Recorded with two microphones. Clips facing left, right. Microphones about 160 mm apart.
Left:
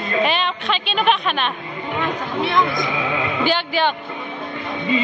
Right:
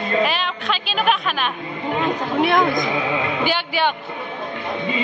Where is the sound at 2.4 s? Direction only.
50° right (ahead or behind).